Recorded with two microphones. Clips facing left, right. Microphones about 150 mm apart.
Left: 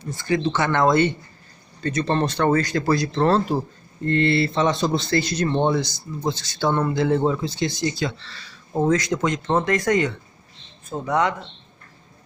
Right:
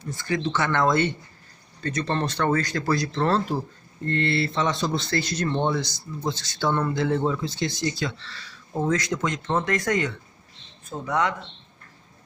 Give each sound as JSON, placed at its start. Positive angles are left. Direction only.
{"t": 0.1, "sound": "speech", "side_deg": 20}
{"t": 7.5, "sound": "speech", "side_deg": 15}
{"t": 8.0, "sound": "speech", "side_deg": 25}